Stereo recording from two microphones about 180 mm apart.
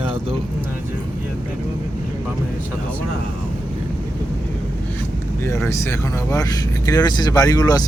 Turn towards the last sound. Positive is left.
turn(degrees=20)  # may be behind; listen again after turning